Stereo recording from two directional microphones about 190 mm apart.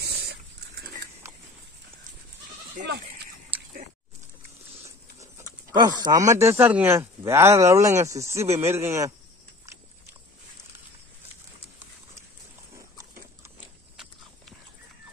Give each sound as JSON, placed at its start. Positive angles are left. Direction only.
{"t": 0.0, "sound": "pig", "side_deg": -60}
{"t": 3.5, "sound": "biting", "side_deg": -10}
{"t": 5.7, "sound": "speech", "side_deg": -20}